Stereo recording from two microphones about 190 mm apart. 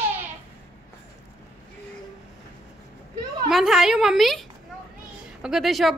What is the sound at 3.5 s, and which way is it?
A woman's voice, centre (ahead or behind).